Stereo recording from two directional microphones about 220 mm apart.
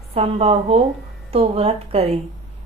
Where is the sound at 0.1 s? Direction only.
25° right (ahead or behind).